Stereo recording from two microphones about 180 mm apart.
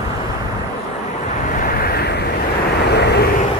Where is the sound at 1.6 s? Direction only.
55° left (ahead or behind).